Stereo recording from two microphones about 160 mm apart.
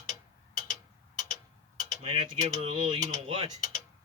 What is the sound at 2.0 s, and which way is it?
Mechanisms, 35° right (ahead or behind).